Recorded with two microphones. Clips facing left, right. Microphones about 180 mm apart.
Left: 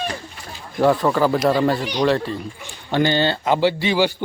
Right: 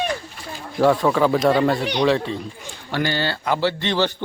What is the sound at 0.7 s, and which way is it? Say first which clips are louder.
A man's voice: even; centre (ahead or behind).